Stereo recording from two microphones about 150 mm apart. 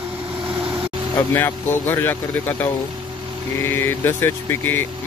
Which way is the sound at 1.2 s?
15° left (ahead or behind).